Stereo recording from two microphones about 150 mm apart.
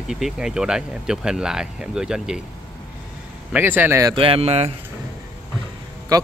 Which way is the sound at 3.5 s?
10° right (ahead or behind).